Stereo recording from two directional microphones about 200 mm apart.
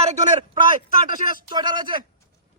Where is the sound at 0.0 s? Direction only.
35° right (ahead or behind).